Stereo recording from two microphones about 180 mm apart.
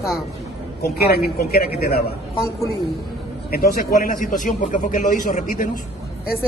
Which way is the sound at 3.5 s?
55° left (ahead or behind).